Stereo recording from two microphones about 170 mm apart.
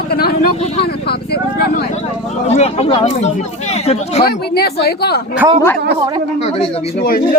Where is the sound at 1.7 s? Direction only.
45° left (ahead or behind).